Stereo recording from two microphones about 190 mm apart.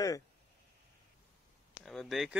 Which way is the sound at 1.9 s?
Centre (ahead or behind).